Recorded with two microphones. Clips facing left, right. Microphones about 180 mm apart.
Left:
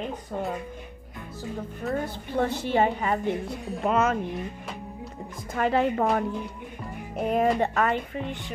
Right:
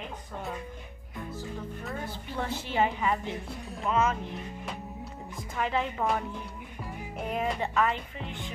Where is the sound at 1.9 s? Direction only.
50° left (ahead or behind).